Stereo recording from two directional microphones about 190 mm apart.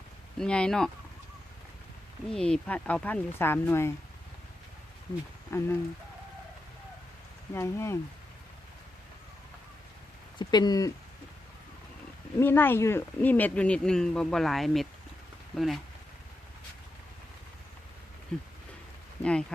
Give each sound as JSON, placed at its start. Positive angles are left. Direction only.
{"t": 0.3, "sound": "speech", "side_deg": 5}
{"t": 2.2, "sound": "speech", "side_deg": 5}
{"t": 5.5, "sound": "speech", "side_deg": 15}
{"t": 7.5, "sound": "speech", "side_deg": 15}
{"t": 10.3, "sound": "speech", "side_deg": 20}
{"t": 12.4, "sound": "speech", "side_deg": 10}
{"t": 19.2, "sound": "speech", "side_deg": 5}